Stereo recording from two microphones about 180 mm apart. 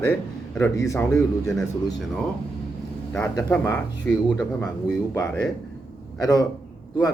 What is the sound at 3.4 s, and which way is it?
Speech, 10° left (ahead or behind).